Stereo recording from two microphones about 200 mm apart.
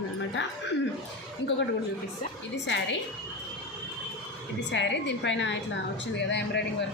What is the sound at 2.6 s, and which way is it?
Speech, 65° left (ahead or behind).